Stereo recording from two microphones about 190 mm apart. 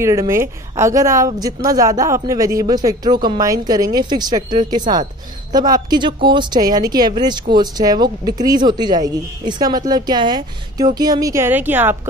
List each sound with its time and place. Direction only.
0.0 s speech: 15° right (ahead or behind)